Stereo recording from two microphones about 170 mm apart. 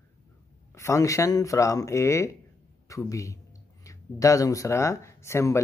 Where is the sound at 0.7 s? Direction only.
20° left (ahead or behind).